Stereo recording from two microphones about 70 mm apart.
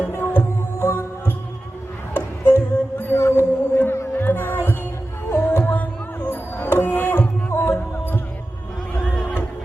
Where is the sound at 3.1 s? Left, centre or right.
Left.